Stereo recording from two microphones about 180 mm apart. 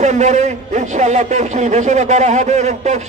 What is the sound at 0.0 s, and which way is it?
A man's voice, 40° right (ahead or behind).